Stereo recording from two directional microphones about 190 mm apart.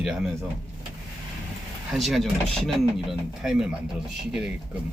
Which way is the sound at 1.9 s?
Centre (ahead or behind).